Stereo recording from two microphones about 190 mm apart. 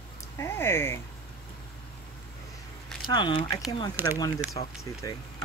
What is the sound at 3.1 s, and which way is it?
Speech, 25° left (ahead or behind).